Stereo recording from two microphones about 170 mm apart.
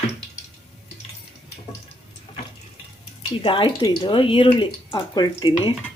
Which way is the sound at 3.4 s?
30° left (ahead or behind).